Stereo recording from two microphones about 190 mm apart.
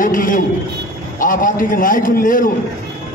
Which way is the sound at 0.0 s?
45° left (ahead or behind).